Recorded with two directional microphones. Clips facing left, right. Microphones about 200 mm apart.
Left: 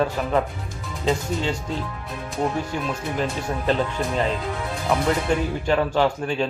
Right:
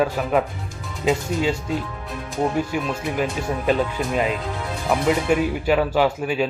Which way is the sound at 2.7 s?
10° right (ahead or behind).